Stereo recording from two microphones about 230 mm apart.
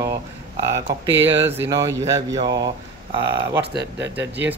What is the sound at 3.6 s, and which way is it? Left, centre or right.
Speech, right.